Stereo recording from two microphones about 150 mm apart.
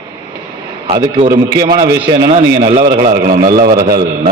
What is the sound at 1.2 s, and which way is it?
Speech, 55° right (ahead or behind).